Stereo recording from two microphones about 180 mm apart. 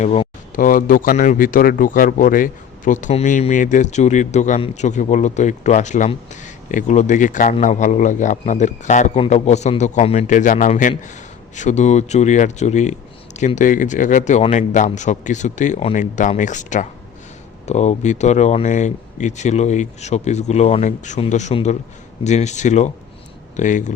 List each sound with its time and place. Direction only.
0.0 s speech: 40° left (ahead or behind)